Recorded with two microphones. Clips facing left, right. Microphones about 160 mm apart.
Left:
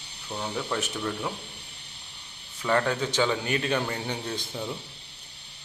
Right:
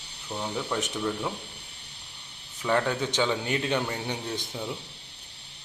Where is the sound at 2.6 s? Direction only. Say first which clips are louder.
Left 1 dB; 10° right (ahead or behind).